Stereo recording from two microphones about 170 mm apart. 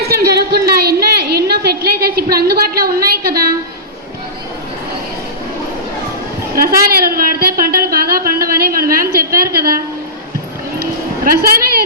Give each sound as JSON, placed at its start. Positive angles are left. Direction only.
{"t": 0.1, "sound": "a sound", "side_deg": -70}
{"t": 6.6, "sound": "a woman's voice", "side_deg": -60}
{"t": 11.3, "sound": "a woman's voice", "side_deg": -60}